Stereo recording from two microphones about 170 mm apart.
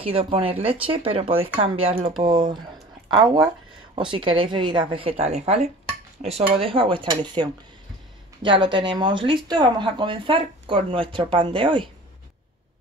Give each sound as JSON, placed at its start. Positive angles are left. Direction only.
{"t": 0.0, "sound": "speech", "side_deg": -35}
{"t": 3.9, "sound": "speech", "side_deg": -30}